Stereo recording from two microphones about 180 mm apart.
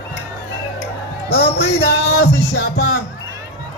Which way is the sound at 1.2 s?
70° left (ahead or behind).